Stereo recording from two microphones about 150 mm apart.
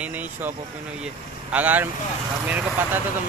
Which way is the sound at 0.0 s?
10° right (ahead or behind).